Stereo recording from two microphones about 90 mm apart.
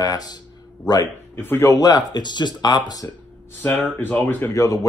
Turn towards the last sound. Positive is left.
turn(degrees=35)  # may be behind; listen again after turning